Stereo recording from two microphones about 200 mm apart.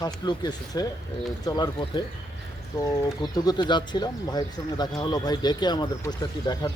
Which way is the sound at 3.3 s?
20° left (ahead or behind).